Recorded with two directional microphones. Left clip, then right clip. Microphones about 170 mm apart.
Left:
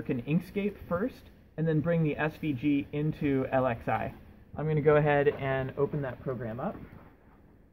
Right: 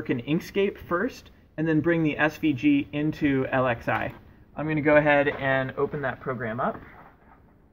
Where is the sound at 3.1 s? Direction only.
40° left (ahead or behind).